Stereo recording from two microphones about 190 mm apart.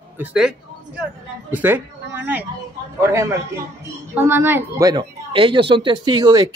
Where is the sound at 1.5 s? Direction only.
10° right (ahead or behind).